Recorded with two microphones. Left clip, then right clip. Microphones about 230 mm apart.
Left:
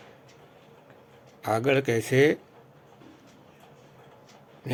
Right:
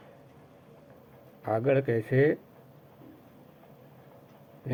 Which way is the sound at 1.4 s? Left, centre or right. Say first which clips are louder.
Left 2 dB; left.